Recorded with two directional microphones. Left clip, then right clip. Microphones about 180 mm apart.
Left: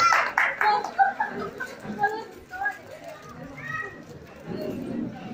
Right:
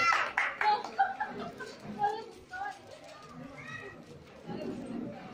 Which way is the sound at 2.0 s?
5° right (ahead or behind).